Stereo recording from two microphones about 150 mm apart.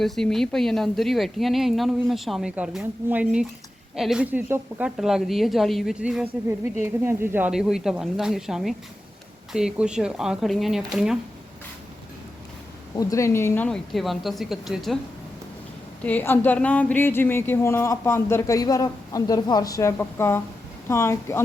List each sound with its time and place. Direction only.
0.0 s speech: 5° left (ahead or behind); by 4.9 s 15° right (ahead or behind)
4.9 s speech: centre (ahead or behind)
13.0 s speech: 20° left (ahead or behind)
13.7 s speech: 5° left (ahead or behind)
16.0 s speech: 10° left (ahead or behind)